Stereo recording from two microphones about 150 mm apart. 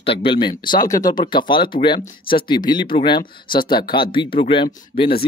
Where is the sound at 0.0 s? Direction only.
35° left (ahead or behind).